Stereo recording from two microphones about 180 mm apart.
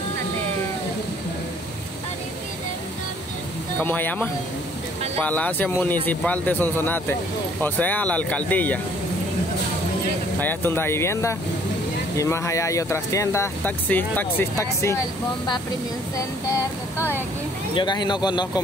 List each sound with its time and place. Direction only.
3.8 s speech: 10° left (ahead or behind)
10.4 s speech: 10° left (ahead or behind)
16.4 s speech: 15° left (ahead or behind)